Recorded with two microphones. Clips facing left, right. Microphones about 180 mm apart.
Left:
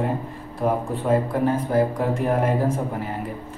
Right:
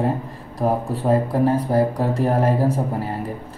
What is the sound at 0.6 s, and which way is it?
Speech, 35° right (ahead or behind).